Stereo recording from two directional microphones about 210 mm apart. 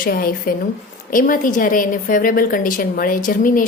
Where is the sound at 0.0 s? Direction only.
45° left (ahead or behind).